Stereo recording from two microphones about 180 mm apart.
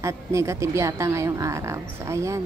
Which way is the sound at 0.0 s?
15° right (ahead or behind).